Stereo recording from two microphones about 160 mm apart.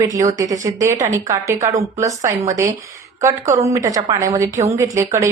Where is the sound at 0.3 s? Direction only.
20° right (ahead or behind).